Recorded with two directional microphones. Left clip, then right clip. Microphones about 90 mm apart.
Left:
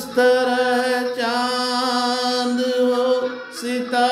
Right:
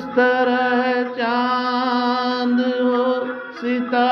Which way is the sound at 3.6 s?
35° left (ahead or behind).